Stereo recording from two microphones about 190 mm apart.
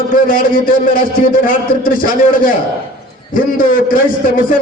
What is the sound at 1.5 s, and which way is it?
A man's voice, 45° left (ahead or behind).